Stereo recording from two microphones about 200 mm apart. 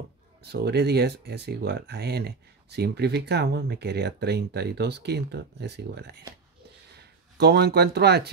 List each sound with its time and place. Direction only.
0.5 s speech: 55° right (ahead or behind)